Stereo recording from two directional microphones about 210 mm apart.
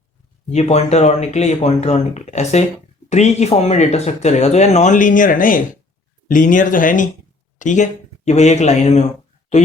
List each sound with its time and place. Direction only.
0.5 s speech: 30° left (ahead or behind)